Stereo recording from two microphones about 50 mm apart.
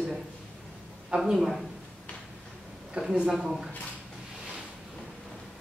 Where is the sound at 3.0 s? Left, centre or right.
Right.